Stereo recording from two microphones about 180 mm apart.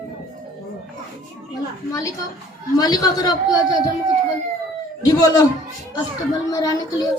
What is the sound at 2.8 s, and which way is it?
Speech, 20° left (ahead or behind).